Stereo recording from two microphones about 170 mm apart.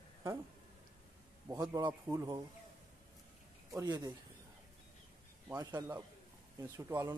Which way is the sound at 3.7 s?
25° right (ahead or behind).